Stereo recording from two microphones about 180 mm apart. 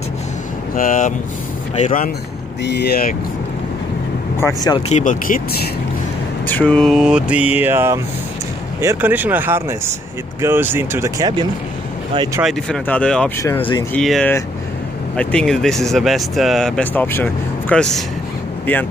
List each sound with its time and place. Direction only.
0.7 s speech: 45° left (ahead or behind)
2.6 s speech: 65° left (ahead or behind)
4.4 s speech: 20° left (ahead or behind)
4.8 s speech: 45° left (ahead or behind)
6.4 s speech: 10° left (ahead or behind); by 11.4 s 20° right (ahead or behind)
12.6 s speech: 5° left (ahead or behind)
13.6 s speech: 30° left (ahead or behind)
13.9 s speech: 5° left (ahead or behind)